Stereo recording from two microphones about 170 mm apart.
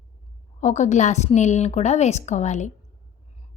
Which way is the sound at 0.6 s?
45° left (ahead or behind).